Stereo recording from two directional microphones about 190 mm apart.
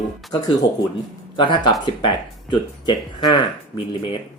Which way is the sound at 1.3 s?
25° left (ahead or behind).